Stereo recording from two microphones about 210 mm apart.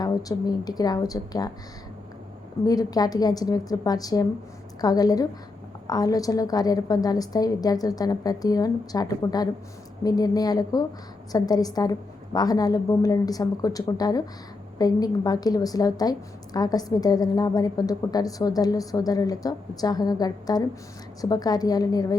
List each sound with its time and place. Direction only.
0.0 s a woman's voice: 15° left (ahead or behind)
2.6 s a woman's voice: 15° left (ahead or behind)